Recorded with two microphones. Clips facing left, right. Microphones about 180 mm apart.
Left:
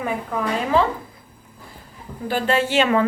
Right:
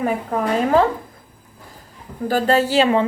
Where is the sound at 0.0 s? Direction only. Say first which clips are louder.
Right 4 dB; 45° right (ahead or behind).